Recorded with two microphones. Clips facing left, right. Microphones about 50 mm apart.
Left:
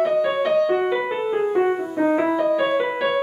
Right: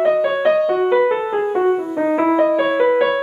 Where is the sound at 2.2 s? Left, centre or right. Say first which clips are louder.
Right 5 dB; right.